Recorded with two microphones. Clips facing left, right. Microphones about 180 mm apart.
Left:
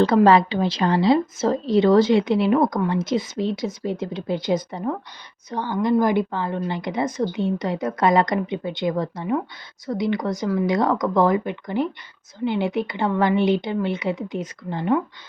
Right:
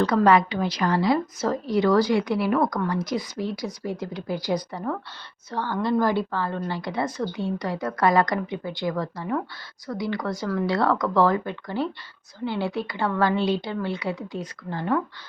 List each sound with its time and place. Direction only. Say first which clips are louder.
0.3 s a woman's voice: left 3 dB; 30° left (ahead or behind)